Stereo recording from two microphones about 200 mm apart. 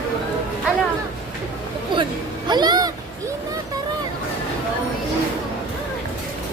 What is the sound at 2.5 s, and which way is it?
Speech, 20° right (ahead or behind).